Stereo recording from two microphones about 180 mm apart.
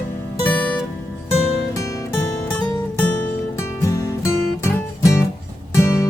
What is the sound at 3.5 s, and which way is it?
Music, 20° left (ahead or behind).